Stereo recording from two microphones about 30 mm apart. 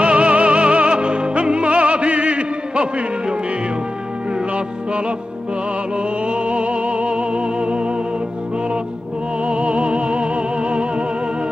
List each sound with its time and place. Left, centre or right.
0.0 s music: right
6.2 s music: right
9.5 s music: right